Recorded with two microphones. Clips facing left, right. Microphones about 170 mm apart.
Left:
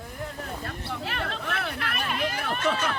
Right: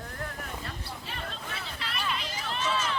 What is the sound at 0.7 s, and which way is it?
Hubbub, 65° left (ahead or behind).